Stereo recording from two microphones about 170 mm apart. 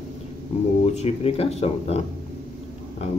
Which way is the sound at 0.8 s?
40° left (ahead or behind).